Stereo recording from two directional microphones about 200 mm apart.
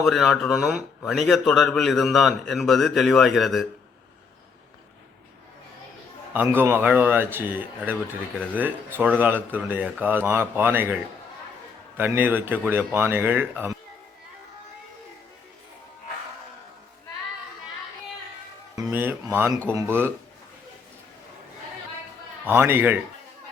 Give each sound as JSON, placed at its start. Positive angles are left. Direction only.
{"t": 0.0, "sound": "a man's voice", "side_deg": 0}
{"t": 6.3, "sound": "speech", "side_deg": -10}
{"t": 11.9, "sound": "speech", "side_deg": -10}
{"t": 18.8, "sound": "a sound", "side_deg": -10}
{"t": 19.6, "sound": "speech", "side_deg": -10}
{"t": 22.4, "sound": "speech", "side_deg": -10}